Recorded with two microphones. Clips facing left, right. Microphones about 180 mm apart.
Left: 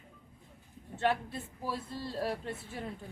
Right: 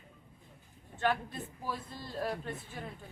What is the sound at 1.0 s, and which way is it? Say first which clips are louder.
Speech: left 1 dB; 30° left (ahead or behind).